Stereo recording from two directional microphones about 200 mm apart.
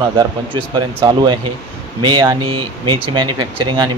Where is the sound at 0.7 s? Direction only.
20° right (ahead or behind).